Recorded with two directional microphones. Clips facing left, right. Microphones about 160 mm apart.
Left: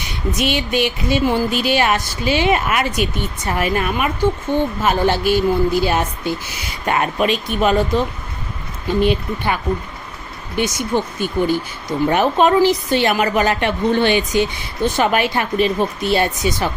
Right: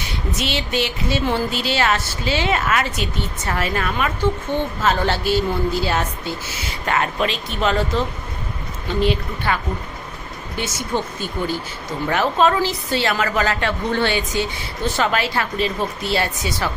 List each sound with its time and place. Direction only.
0.3 s speech: 15° left (ahead or behind)
10.6 s speech: 15° left (ahead or behind)